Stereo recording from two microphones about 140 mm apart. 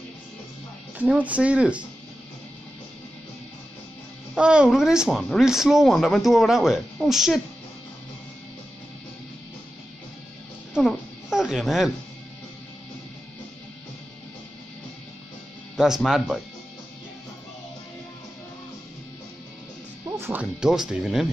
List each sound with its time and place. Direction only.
0.9 s speech: 10° right (ahead or behind)
4.4 s speech: 5° right (ahead or behind)
10.7 s a sound: centre (ahead or behind)
15.7 s speech: 5° right (ahead or behind)
20.1 s music: 15° right (ahead or behind)
20.6 s speech: 5° right (ahead or behind)